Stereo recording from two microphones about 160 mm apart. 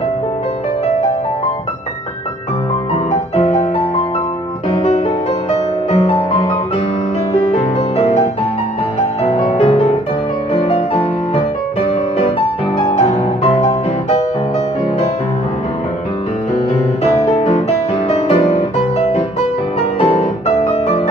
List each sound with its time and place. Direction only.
5.5 s music: 40° left (ahead or behind)
7.5 s music: 40° left (ahead or behind)
9.4 s music: 40° left (ahead or behind)
12.7 s music: 45° left (ahead or behind)
18.1 s music: 40° left (ahead or behind)
20.0 s music: 40° left (ahead or behind)